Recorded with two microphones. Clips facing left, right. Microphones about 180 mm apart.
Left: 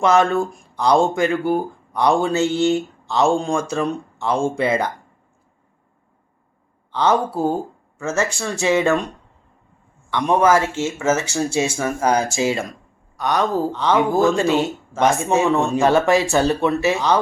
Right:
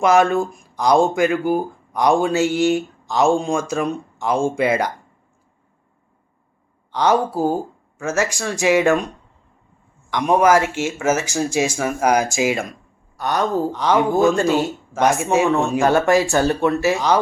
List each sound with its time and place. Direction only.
0.0 s speech: 10° right (ahead or behind)
3.3 s speech: centre (ahead or behind)
3.8 s speech: 10° right (ahead or behind)
6.9 s speech: 15° right (ahead or behind)
10.1 s speech: 15° right (ahead or behind)
13.1 s speech: centre (ahead or behind)
13.7 s speech: 15° right (ahead or behind)
14.1 s speech: centre (ahead or behind)